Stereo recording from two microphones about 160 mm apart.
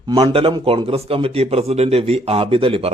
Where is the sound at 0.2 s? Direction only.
35° right (ahead or behind).